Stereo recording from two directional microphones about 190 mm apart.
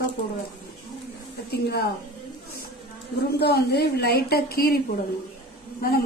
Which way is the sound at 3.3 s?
60° left (ahead or behind).